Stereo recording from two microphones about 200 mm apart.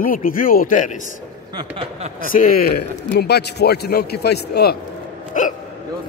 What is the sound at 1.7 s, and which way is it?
Speech, 35° right (ahead or behind).